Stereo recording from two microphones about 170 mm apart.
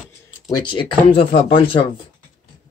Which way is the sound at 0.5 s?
25° left (ahead or behind).